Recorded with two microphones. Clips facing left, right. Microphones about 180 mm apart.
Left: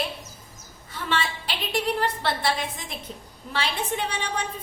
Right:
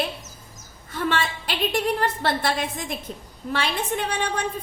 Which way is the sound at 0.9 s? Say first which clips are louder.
Right 3 dB; 50° right (ahead or behind).